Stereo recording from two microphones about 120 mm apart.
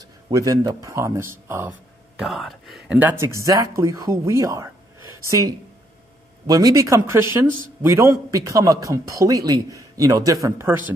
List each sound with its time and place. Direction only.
0.3 s a man's voice: 30° right (ahead or behind)
2.1 s speech: centre (ahead or behind)
3.0 s a man's voice: 20° right (ahead or behind)